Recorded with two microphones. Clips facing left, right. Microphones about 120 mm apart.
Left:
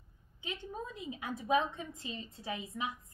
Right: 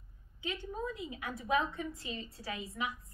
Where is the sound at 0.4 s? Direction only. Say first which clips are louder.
Right 3 dB; 20° left (ahead or behind).